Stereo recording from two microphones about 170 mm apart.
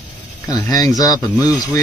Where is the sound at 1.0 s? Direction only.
20° left (ahead or behind).